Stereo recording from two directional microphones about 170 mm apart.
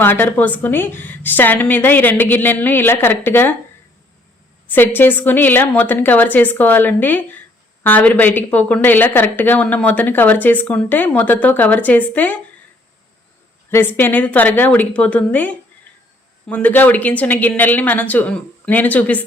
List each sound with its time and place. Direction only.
0.0 s a woman's voice: 15° left (ahead or behind)
4.7 s a woman's voice: 10° left (ahead or behind)
13.7 s a woman's voice: 15° left (ahead or behind)